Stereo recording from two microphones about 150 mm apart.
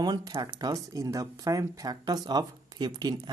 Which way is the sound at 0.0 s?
25° right (ahead or behind).